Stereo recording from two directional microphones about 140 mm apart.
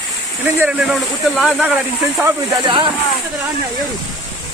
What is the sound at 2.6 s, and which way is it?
Speech, 35° right (ahead or behind).